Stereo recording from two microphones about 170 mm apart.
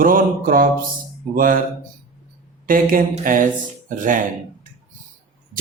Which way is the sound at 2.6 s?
55° right (ahead or behind).